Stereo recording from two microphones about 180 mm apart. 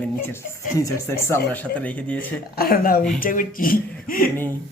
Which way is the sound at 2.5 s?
55° left (ahead or behind).